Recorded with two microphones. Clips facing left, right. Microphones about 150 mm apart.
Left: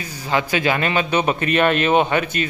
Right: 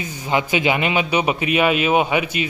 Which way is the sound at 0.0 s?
20° right (ahead or behind).